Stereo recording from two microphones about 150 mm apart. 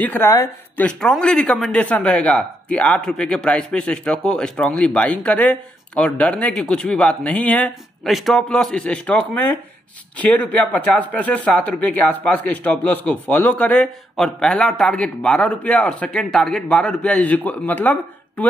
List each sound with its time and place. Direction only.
0.0 s speech: 10° left (ahead or behind)
0.8 s speech: 5° left (ahead or behind)